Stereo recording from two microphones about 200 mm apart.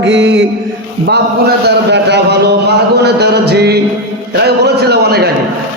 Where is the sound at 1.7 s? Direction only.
55° right (ahead or behind).